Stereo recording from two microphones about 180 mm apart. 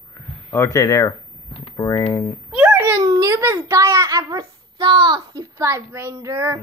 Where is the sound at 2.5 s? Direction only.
10° right (ahead or behind).